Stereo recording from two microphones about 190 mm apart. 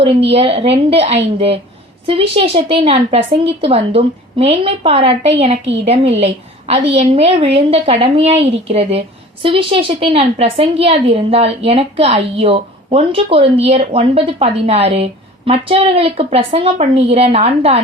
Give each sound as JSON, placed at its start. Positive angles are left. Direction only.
{"t": 0.0, "sound": "a woman's voice", "side_deg": -30}